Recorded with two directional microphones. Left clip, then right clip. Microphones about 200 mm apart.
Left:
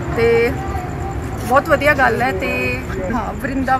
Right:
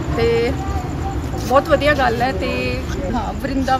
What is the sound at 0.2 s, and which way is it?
Speech, 10° right (ahead or behind).